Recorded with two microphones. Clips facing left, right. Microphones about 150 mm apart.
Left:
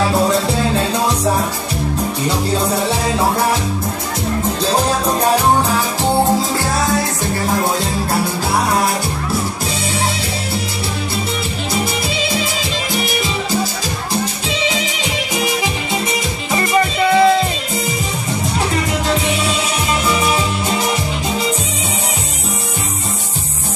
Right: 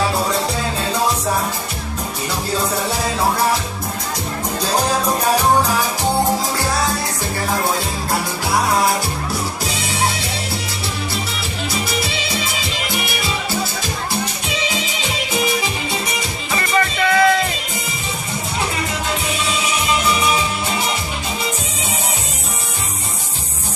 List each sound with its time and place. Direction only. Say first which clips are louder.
16.5 s music: left 3 dB; 25° left (ahead or behind)